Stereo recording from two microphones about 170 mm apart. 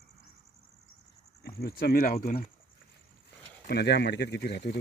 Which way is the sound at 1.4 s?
65° left (ahead or behind).